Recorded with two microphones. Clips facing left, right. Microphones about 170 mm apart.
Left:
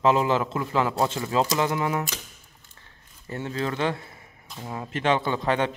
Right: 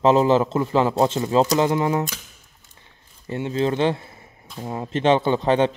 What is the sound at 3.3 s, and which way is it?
Speech, 20° right (ahead or behind).